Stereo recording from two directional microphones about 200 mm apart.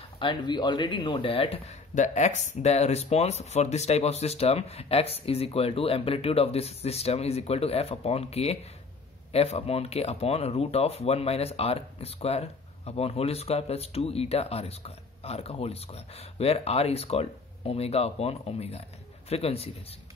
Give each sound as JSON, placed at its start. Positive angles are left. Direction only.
{"t": 0.2, "sound": "speech", "side_deg": 25}